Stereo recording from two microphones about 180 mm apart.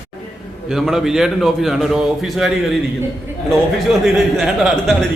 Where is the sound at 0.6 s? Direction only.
5° right (ahead or behind).